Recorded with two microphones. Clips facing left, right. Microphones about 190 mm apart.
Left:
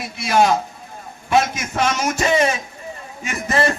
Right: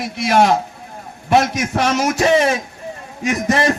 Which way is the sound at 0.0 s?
70° right (ahead or behind).